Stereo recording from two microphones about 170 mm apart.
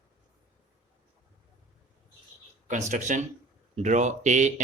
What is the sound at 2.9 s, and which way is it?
Speech, 45° right (ahead or behind).